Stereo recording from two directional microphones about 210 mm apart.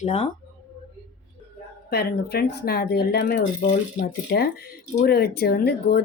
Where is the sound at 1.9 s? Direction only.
50° left (ahead or behind).